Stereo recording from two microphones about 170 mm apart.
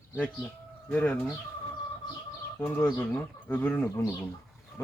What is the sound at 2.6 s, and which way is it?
Speech, 10° left (ahead or behind).